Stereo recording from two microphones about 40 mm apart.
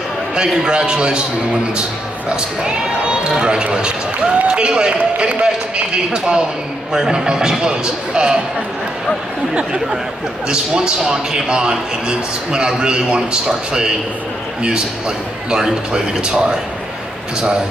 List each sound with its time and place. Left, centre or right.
0.3 s a man's voice: right
9.5 s a man's voice: right